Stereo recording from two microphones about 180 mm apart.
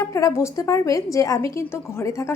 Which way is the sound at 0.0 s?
15° left (ahead or behind).